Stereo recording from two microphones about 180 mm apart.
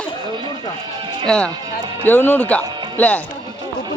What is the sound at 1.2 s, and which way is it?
A man's voice, 5° left (ahead or behind).